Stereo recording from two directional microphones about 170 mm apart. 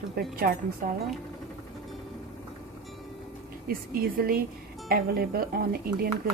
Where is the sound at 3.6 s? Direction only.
60° right (ahead or behind).